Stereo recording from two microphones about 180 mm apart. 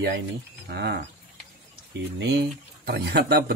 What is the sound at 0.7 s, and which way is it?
Speech, 65° right (ahead or behind).